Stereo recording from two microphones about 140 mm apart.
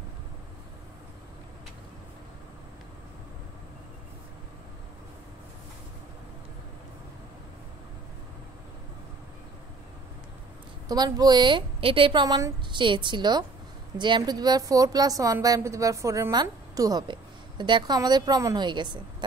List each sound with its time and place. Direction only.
10.9 s a woman's voice: 30° right (ahead or behind)
12.8 s a woman's voice: 35° right (ahead or behind)